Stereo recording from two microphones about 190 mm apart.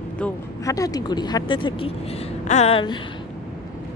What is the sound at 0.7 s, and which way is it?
A woman's voice, 20° left (ahead or behind).